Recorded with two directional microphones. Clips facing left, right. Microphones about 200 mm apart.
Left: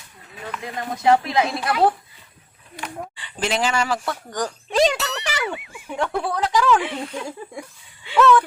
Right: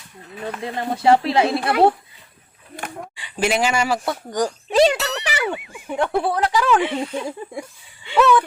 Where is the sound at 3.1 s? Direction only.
10° right (ahead or behind).